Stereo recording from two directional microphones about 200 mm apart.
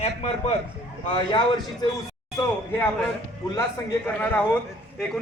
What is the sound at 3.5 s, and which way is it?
Speech, 10° left (ahead or behind).